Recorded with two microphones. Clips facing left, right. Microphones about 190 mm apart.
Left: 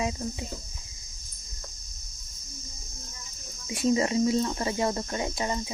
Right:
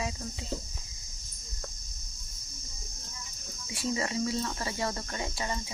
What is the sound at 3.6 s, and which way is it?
Speech, 20° left (ahead or behind).